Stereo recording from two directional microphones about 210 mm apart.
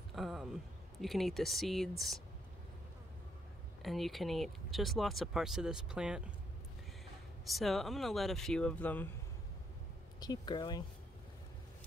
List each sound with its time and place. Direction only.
0.1 s a sound: centre (ahead or behind)
1.0 s speech: centre (ahead or behind)
3.8 s speech: centre (ahead or behind)
7.4 s speech: centre (ahead or behind)
10.2 s speech: 20° left (ahead or behind)